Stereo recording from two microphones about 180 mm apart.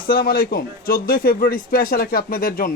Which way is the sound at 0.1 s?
55° left (ahead or behind).